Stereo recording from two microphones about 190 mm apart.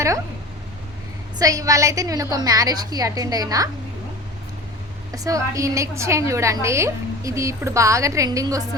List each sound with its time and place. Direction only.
1.4 s a woman's voice: 15° right (ahead or behind)
5.1 s a woman's voice: 20° right (ahead or behind)